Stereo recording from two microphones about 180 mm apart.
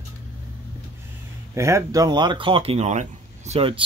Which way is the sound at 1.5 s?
15° right (ahead or behind).